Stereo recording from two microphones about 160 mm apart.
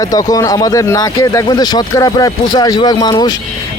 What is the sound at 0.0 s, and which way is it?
Speech, 20° left (ahead or behind).